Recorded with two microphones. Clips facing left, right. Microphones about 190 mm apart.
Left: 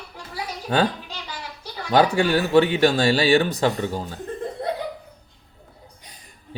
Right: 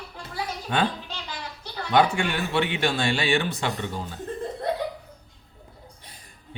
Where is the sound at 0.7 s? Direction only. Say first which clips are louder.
Left 4 dB; 35° left (ahead or behind).